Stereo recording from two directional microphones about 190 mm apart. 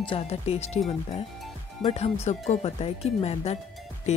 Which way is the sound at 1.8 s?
30° left (ahead or behind).